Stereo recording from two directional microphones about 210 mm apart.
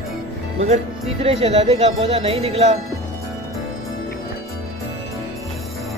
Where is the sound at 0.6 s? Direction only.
30° right (ahead or behind).